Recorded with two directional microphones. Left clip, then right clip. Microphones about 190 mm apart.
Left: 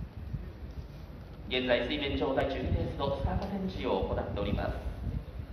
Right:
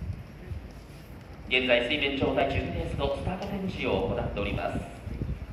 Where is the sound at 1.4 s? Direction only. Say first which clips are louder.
Right 5 dB; 20° left (ahead or behind).